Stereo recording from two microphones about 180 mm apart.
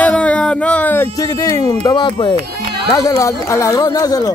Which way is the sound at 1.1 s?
20° left (ahead or behind).